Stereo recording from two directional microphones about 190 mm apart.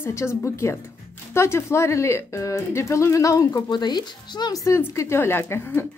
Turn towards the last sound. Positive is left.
turn(degrees=15)  # may be behind; listen again after turning